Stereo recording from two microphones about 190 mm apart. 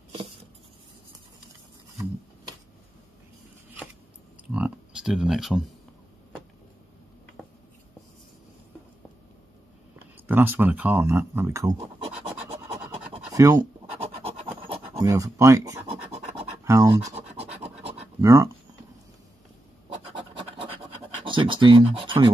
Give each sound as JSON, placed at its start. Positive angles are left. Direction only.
{"t": 4.6, "sound": "a sound", "side_deg": -5}
{"t": 10.1, "sound": "speech", "side_deg": -10}
{"t": 11.8, "sound": "scratch", "side_deg": -30}
{"t": 13.3, "sound": "speech", "side_deg": -15}
{"t": 13.9, "sound": "scratch", "side_deg": -30}
{"t": 15.0, "sound": "speech", "side_deg": -15}
{"t": 16.1, "sound": "scratch", "side_deg": -30}
{"t": 16.6, "sound": "speech", "side_deg": -15}
{"t": 18.2, "sound": "speech", "side_deg": -15}
{"t": 20.1, "sound": "scratch", "side_deg": -25}